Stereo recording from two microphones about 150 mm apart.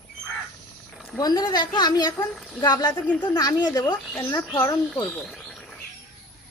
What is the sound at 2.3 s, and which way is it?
Speech, centre (ahead or behind).